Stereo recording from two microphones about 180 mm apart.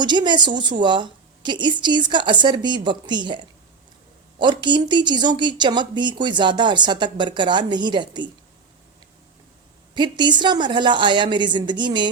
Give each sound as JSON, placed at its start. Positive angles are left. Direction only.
{"t": 0.0, "sound": "speech", "side_deg": -25}
{"t": 9.9, "sound": "speech", "side_deg": -25}